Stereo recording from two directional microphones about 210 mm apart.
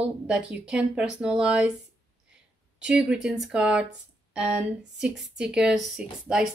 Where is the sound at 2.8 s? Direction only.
5° right (ahead or behind).